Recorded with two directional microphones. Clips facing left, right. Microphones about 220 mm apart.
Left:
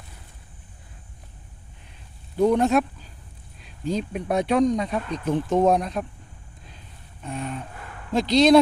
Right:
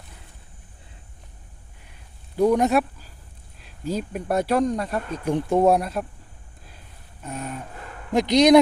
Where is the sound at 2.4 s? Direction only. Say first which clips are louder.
Even; 10° right (ahead or behind).